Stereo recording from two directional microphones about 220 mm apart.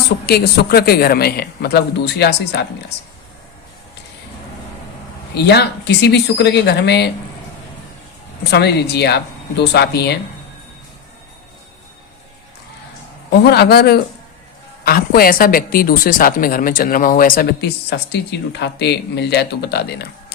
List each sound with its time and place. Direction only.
0.3 s speech: 45° left (ahead or behind)
5.4 s speech: 50° left (ahead or behind)
8.4 s speech: 50° left (ahead or behind)
13.4 s speech: 45° left (ahead or behind)